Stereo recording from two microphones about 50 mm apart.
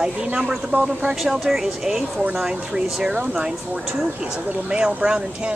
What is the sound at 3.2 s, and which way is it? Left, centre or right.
Speech, right.